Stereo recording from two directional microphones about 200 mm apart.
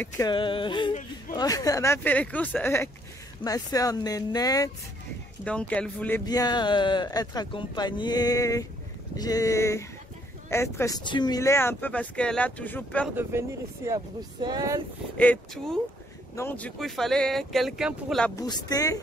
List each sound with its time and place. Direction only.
0.0 s speech: 20° left (ahead or behind)
5.4 s speech: 5° left (ahead or behind)
6.2 s speech: 20° left (ahead or behind)
13.1 s speech: 10° right (ahead or behind)
15.1 s speech: 5° left (ahead or behind)
18.3 s speech: 20° left (ahead or behind)